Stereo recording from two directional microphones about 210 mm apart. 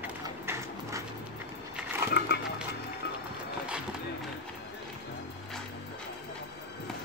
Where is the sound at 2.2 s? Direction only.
55° left (ahead or behind).